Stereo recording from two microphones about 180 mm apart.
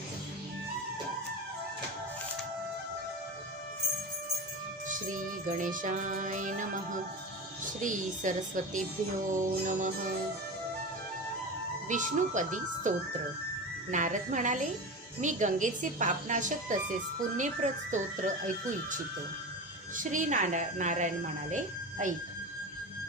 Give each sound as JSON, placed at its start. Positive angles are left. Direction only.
{"t": 4.9, "sound": "music", "side_deg": -45}
{"t": 7.8, "sound": "music", "side_deg": -45}
{"t": 11.9, "sound": "music", "side_deg": -45}
{"t": 13.9, "sound": "music", "side_deg": -45}
{"t": 20.0, "sound": "music", "side_deg": -45}
{"t": 21.5, "sound": "a woman's voice", "side_deg": -45}